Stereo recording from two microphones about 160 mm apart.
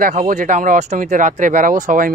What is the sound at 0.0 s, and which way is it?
A man's voice, 55° right (ahead or behind).